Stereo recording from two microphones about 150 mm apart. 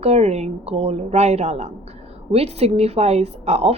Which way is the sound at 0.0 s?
45° right (ahead or behind).